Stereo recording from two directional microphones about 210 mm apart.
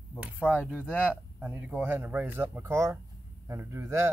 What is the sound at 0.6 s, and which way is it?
Speech, 5° left (ahead or behind).